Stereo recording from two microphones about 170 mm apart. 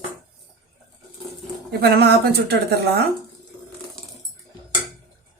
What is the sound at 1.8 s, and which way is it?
Speech, 70° right (ahead or behind).